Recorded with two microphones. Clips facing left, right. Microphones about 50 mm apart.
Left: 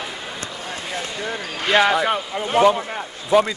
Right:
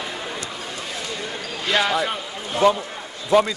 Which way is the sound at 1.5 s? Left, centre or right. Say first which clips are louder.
Left 4 dB; left.